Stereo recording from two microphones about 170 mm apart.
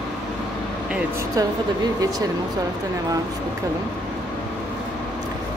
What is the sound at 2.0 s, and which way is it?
Speech, 20° right (ahead or behind).